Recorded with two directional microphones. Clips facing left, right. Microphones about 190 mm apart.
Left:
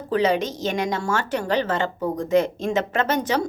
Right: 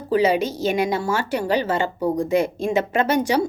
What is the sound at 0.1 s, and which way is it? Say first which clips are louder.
A woman's voice: right 2 dB; 10° right (ahead or behind).